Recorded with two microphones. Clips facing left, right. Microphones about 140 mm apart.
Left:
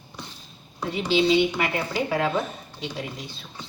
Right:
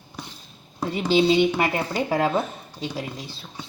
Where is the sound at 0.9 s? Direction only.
40° right (ahead or behind).